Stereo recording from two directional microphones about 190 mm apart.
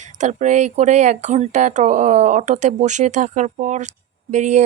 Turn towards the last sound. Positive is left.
turn(degrees=-40)  # may be behind; listen again after turning